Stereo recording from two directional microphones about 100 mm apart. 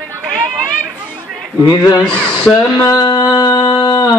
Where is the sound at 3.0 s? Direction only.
45° left (ahead or behind).